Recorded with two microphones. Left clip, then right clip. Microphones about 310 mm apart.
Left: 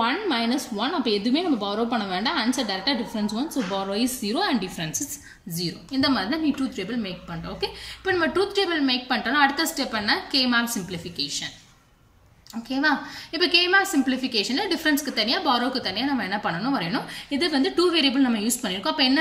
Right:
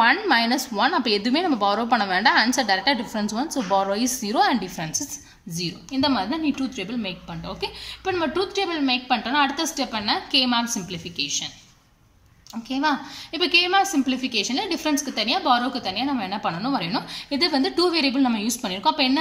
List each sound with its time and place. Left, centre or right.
0.0 s a sound: right
0.8 s a woman's voice: right; by 11.5 s centre
12.6 s a woman's voice: centre